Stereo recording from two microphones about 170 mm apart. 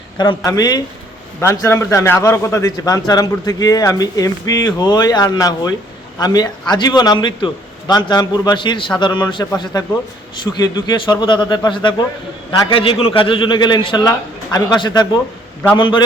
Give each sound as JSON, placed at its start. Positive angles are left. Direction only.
{"t": 0.2, "sound": "a man's voice", "side_deg": 20}